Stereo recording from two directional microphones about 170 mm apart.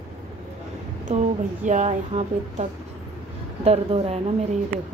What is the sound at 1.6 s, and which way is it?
A woman's voice, 45° right (ahead or behind).